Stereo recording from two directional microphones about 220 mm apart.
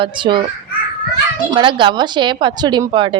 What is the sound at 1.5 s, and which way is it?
A woman's voice, 20° right (ahead or behind).